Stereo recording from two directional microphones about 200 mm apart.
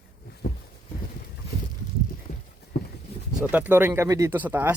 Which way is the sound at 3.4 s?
10° right (ahead or behind).